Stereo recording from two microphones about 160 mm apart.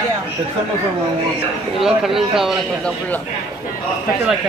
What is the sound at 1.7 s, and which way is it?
Speech, centre (ahead or behind).